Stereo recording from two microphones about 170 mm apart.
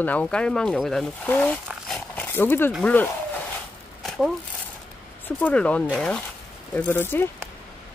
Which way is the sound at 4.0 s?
Centre (ahead or behind).